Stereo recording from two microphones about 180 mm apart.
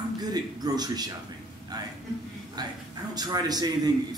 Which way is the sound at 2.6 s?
20° right (ahead or behind).